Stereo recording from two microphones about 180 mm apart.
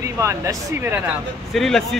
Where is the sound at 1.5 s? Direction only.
Centre (ahead or behind).